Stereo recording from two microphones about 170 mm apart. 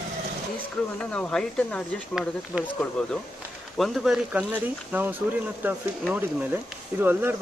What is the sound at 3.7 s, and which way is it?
A man's voice, centre (ahead or behind).